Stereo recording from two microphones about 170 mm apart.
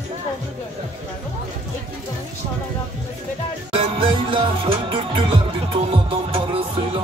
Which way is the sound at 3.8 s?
30° right (ahead or behind).